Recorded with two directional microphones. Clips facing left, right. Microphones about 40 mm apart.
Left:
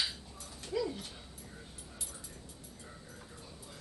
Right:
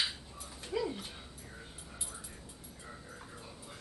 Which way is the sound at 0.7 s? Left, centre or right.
Centre.